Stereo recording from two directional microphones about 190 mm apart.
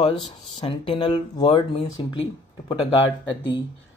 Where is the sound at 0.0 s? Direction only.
30° left (ahead or behind).